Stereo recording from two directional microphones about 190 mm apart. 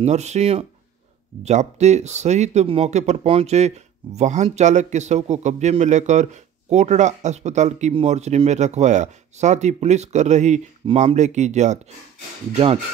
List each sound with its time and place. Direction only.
0.0 s speech: 35° right (ahead or behind)